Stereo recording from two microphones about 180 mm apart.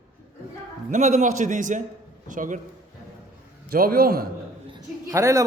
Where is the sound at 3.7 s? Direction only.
55° right (ahead or behind).